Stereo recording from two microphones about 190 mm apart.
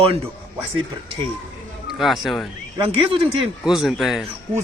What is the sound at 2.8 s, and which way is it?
Speech, 25° right (ahead or behind).